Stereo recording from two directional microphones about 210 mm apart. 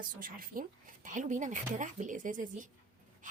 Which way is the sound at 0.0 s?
40° right (ahead or behind).